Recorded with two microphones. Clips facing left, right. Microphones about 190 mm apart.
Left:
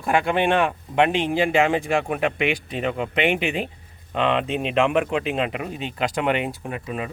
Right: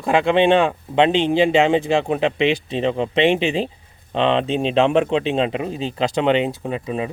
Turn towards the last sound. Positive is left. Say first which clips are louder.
# right 5 dB
turn(degrees=-25)  # may be behind; listen again after turning